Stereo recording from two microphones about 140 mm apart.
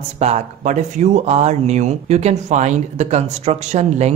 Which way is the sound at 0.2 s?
55° right (ahead or behind).